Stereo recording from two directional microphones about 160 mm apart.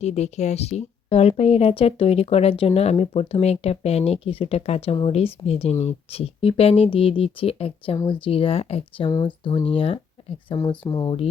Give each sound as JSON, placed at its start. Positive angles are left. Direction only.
{"t": 0.0, "sound": "speech", "side_deg": 45}